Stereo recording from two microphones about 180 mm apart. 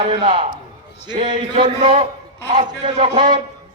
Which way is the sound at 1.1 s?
25° right (ahead or behind).